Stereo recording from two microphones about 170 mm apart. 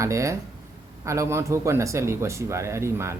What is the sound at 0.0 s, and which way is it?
Speech, 20° right (ahead or behind).